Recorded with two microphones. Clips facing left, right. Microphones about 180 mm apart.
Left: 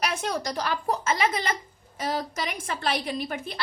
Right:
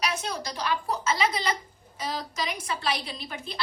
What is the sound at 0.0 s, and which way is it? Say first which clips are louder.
A woman's voice: left 3 dB; 55° left (ahead or behind).